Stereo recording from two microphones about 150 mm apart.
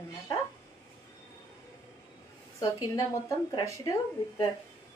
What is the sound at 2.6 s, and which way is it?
A woman's voice, 30° left (ahead or behind).